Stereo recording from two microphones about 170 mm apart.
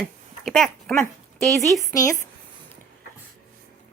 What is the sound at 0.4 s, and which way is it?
Speech, 5° left (ahead or behind).